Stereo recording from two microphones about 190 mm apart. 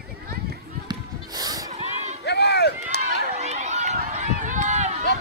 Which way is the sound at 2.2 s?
60° left (ahead or behind).